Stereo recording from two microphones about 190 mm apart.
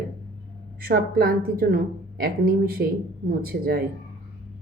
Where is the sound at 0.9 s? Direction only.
50° right (ahead or behind).